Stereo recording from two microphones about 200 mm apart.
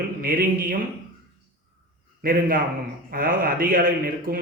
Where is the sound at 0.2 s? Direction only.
45° right (ahead or behind).